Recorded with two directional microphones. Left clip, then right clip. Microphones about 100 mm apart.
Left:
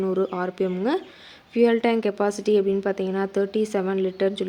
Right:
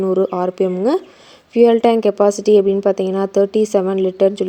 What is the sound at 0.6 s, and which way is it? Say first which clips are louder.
Speech: right 7 dB; 40° right (ahead or behind).